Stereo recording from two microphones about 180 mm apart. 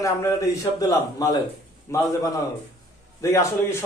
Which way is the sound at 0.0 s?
15° left (ahead or behind).